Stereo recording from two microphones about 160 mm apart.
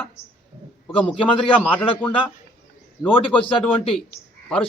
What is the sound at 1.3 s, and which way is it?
Speech, 10° left (ahead or behind).